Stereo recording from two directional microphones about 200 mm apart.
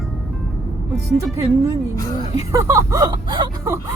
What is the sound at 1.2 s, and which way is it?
Speech, 15° right (ahead or behind).